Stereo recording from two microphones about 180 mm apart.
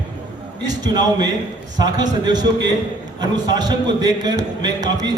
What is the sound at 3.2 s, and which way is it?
A man's voice, 20° right (ahead or behind).